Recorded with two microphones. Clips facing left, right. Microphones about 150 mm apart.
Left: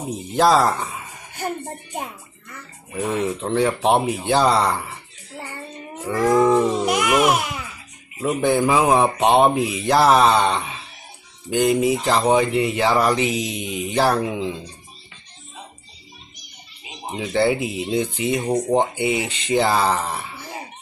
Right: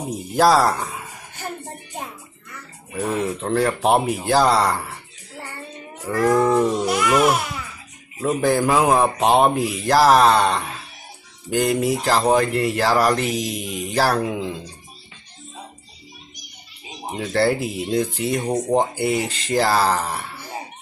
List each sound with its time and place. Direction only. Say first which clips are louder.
0.3 s speech: even; 5° right (ahead or behind)
2.9 s speech: even; centre (ahead or behind)
6.0 s speech: left 1 dB; centre (ahead or behind)
6.9 s speech: even; 15° left (ahead or behind)
8.2 s speech: even; 5° left (ahead or behind)
17.1 s speech: even; centre (ahead or behind)